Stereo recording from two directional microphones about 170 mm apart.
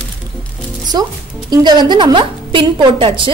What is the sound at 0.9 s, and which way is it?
A woman's voice, 25° right (ahead or behind).